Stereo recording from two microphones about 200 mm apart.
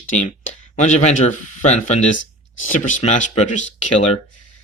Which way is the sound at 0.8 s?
35° left (ahead or behind).